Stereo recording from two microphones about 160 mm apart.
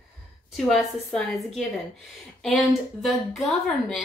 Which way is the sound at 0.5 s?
Centre (ahead or behind).